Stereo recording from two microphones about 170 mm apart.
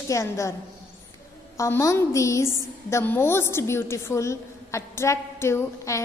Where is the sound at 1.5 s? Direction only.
20° left (ahead or behind).